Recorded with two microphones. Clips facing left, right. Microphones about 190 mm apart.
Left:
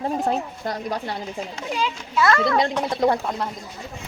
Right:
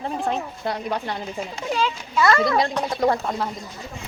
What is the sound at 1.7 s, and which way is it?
Speech, 10° left (ahead or behind).